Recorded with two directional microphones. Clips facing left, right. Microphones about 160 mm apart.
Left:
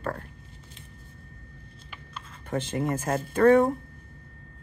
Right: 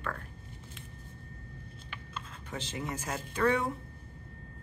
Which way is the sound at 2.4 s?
55° left (ahead or behind).